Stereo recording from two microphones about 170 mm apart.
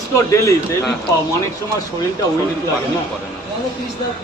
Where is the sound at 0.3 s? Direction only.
20° left (ahead or behind).